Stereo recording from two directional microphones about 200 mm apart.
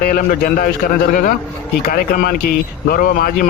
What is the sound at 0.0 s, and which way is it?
Speech, 45° left (ahead or behind).